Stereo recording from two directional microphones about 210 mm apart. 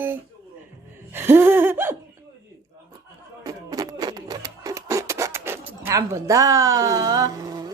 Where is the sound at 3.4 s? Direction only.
15° right (ahead or behind).